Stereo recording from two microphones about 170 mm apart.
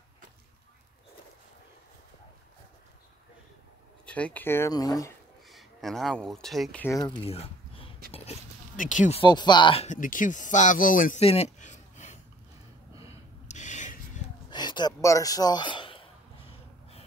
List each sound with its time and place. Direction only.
4.0 s speech: 10° left (ahead or behind)
5.5 s speech: centre (ahead or behind)
6.8 s speech: 15° left (ahead or behind)
7.2 s a sound: 35° left (ahead or behind)
8.7 s speech: 50° left (ahead or behind)
9.2 s speech: 25° left (ahead or behind)
9.8 s speech: 50° left (ahead or behind)
11.1 s a sound: 35° left (ahead or behind)
13.5 s rub: 45° left (ahead or behind)
14.5 s a sound: 25° left (ahead or behind)